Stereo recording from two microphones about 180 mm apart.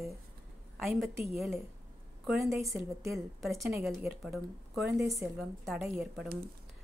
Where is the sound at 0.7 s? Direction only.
Centre (ahead or behind).